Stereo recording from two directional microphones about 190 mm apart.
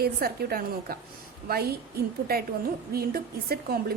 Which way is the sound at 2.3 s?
55° right (ahead or behind).